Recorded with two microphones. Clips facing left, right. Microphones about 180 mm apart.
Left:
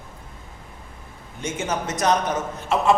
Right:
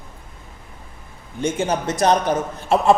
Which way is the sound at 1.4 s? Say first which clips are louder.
Right 5 dB; 30° right (ahead or behind).